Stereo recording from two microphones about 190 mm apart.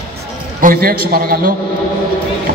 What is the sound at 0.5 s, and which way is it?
Speech, 50° right (ahead or behind).